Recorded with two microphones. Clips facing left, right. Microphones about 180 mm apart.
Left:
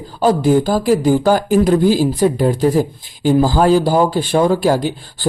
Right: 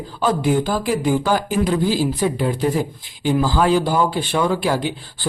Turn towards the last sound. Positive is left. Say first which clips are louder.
# left 4 dB
turn(degrees=40)  # may be behind; listen again after turning